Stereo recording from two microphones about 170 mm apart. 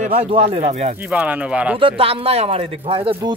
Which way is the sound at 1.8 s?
35° right (ahead or behind).